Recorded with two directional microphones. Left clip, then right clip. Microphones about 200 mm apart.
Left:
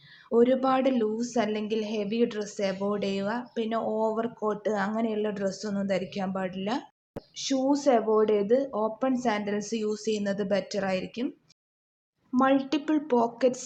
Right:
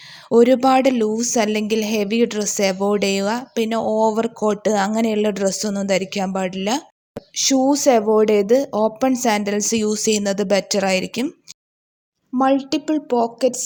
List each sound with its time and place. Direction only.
0.3 s a woman's voice: 50° right (ahead or behind)
12.4 s a woman's voice: 30° right (ahead or behind)